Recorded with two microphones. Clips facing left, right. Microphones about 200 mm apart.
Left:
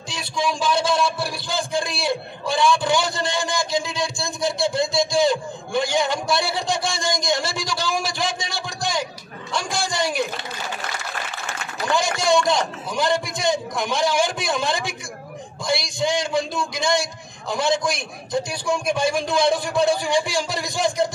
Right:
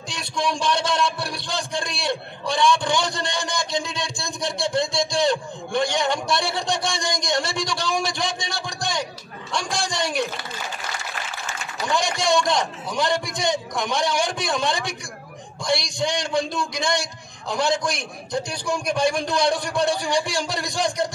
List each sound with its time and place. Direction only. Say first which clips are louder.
0.1 s a man's voice: left 1 dB; centre (ahead or behind)
11.8 s a man's voice: left 1 dB; centre (ahead or behind)